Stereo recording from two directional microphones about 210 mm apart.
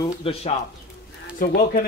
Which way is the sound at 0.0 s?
25° left (ahead or behind).